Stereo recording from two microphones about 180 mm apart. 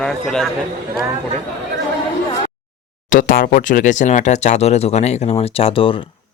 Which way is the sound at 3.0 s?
50° left (ahead or behind).